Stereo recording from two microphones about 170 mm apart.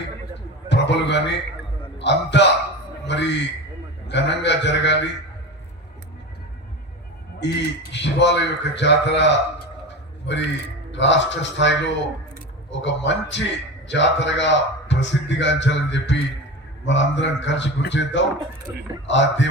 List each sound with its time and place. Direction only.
0.7 s a man's voice: 90° left
7.3 s a man's voice: 90° left
12.7 s a man's voice: 90° left
18.7 s speech: 20° right (ahead or behind)
19.0 s a man's voice: 90° left